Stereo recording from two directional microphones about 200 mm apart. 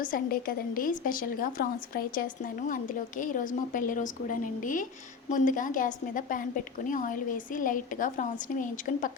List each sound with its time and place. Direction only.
0.0 s a woman's voice: 45° left (ahead or behind)